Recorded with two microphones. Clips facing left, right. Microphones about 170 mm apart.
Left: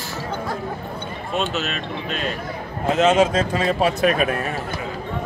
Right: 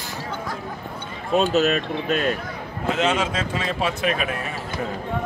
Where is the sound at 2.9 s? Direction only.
40° left (ahead or behind).